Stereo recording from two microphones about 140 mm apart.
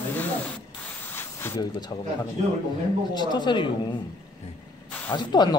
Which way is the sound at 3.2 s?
30° left (ahead or behind).